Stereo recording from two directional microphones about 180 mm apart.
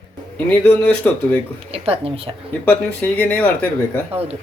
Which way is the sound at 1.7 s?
30° right (ahead or behind).